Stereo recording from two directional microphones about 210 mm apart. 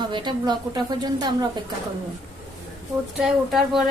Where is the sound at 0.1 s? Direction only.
20° right (ahead or behind).